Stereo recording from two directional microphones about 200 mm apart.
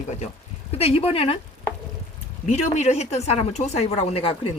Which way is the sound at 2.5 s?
35° left (ahead or behind).